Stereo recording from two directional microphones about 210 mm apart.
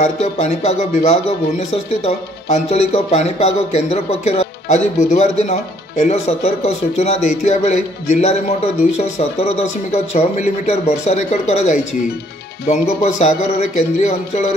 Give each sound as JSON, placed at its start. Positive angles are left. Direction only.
{"t": 0.0, "sound": "speech", "side_deg": 30}